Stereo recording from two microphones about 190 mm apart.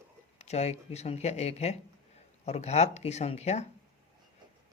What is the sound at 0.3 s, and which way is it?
Speech, 35° left (ahead or behind).